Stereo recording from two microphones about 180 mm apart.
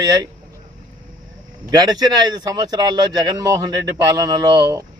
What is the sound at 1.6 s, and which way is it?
A man's voice, 20° right (ahead or behind).